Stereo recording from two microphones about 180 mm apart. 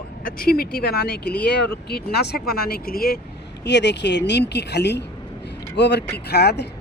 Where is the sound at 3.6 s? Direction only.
75° left (ahead or behind).